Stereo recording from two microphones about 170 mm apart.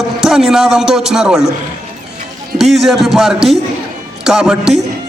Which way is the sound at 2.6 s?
Centre (ahead or behind).